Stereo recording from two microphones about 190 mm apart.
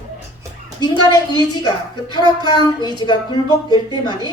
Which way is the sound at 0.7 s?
20° left (ahead or behind).